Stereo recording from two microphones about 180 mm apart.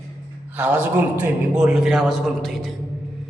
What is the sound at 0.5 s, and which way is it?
A man's voice, 10° right (ahead or behind).